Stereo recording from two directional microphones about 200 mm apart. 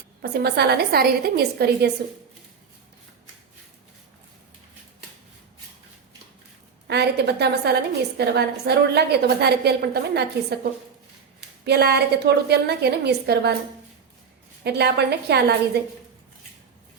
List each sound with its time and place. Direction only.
0.2 s a woman's voice: 55° right (ahead or behind)
6.8 s a woman's voice: 55° right (ahead or behind)
11.6 s a woman's voice: 55° right (ahead or behind)
14.6 s a woman's voice: 55° right (ahead or behind)